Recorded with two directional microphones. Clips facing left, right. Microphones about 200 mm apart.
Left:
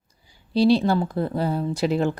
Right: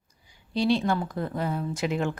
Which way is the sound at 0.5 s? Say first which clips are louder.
Left 6 dB; 35° left (ahead or behind).